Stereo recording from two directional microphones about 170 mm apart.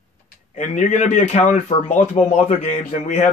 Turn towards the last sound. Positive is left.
turn(degrees=45)  # may be behind; listen again after turning